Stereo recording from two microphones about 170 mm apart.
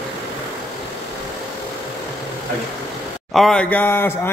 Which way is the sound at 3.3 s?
5° left (ahead or behind).